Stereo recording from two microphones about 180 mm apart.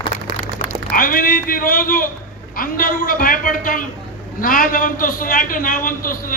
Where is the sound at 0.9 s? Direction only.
50° left (ahead or behind).